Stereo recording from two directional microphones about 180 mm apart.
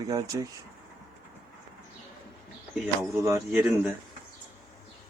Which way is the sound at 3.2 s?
15° right (ahead or behind).